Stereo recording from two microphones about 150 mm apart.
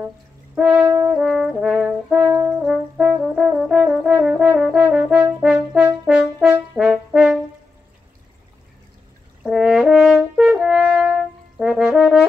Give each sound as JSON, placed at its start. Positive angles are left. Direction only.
{"t": 0.6, "sound": "brass instrument", "side_deg": -10}
{"t": 1.1, "sound": "brass instrument", "side_deg": -5}
{"t": 2.6, "sound": "brass instrument", "side_deg": 0}
{"t": 9.4, "sound": "french horn", "side_deg": 0}